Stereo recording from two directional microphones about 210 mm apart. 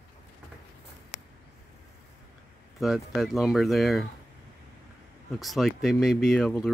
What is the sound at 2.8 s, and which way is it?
Speech, centre (ahead or behind).